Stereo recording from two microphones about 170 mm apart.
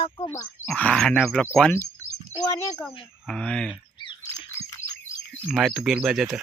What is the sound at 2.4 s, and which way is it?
Speech, 15° left (ahead or behind).